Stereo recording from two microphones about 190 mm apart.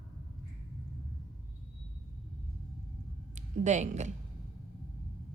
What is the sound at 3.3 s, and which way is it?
Speech, 40° right (ahead or behind).